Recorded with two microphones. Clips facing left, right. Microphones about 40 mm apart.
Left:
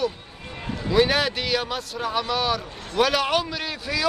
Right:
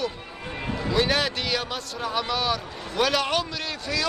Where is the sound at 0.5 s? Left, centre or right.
Centre.